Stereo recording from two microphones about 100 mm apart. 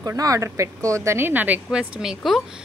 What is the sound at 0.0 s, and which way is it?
Speech, 35° right (ahead or behind).